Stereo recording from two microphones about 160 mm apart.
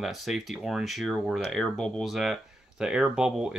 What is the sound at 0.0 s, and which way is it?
Speech, centre (ahead or behind).